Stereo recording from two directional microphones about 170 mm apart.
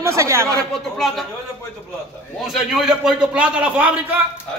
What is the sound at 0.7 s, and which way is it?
Speech, centre (ahead or behind).